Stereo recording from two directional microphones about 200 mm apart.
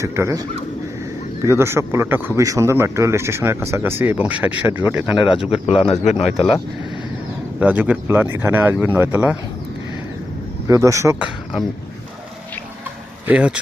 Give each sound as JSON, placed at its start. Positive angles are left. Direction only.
{"t": 0.0, "sound": "speech", "side_deg": -15}
{"t": 1.5, "sound": "speech", "side_deg": -10}
{"t": 5.6, "sound": "speech", "side_deg": 30}
{"t": 7.6, "sound": "speech", "side_deg": -5}
{"t": 10.7, "sound": "speech", "side_deg": -15}
{"t": 13.2, "sound": "speech", "side_deg": -5}